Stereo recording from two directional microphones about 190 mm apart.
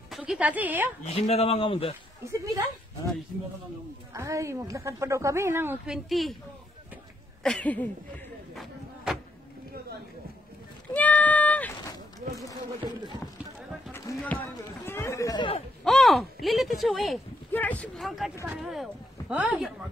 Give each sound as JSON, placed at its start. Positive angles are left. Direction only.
{"t": 0.1, "sound": "a woman's voice", "side_deg": -5}
{"t": 1.0, "sound": "speech", "side_deg": 35}
{"t": 2.4, "sound": "a woman's voice", "side_deg": -15}
{"t": 4.1, "sound": "a woman's voice", "side_deg": -15}
{"t": 6.0, "sound": "speech", "side_deg": 0}
{"t": 7.4, "sound": "a sound", "side_deg": 5}
{"t": 8.5, "sound": "a sound", "side_deg": -5}
{"t": 11.0, "sound": "a sound", "side_deg": 10}
{"t": 12.8, "sound": "speech", "side_deg": -25}
{"t": 13.9, "sound": "run", "side_deg": 10}
{"t": 15.8, "sound": "speech", "side_deg": 0}